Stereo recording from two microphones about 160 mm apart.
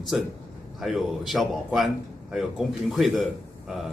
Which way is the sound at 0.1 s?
5° right (ahead or behind).